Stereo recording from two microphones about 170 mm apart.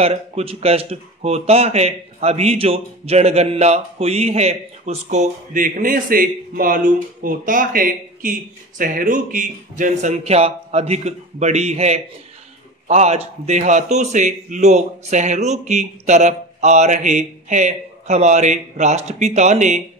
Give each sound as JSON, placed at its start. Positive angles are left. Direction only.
{"t": 0.0, "sound": "a man's voice", "side_deg": -35}